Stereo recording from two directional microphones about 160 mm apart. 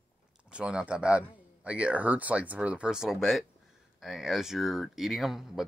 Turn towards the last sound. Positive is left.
turn(degrees=0)  # may be behind; listen again after turning